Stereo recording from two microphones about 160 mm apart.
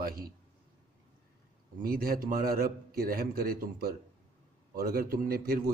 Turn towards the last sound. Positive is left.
turn(degrees=-65)  # may be behind; listen again after turning